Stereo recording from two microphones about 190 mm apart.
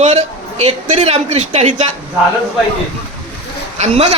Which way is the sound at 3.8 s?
35° right (ahead or behind).